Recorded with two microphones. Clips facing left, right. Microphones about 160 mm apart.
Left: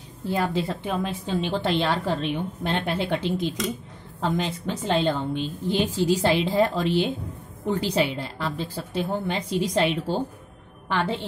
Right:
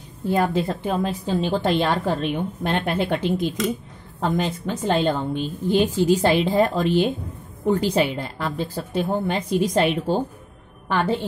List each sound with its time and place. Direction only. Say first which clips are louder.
0.3 s a woman's voice: right 4 dB; 50° right (ahead or behind)